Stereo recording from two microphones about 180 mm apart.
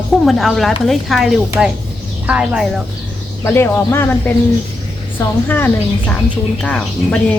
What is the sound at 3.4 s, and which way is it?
Speech, 10° left (ahead or behind).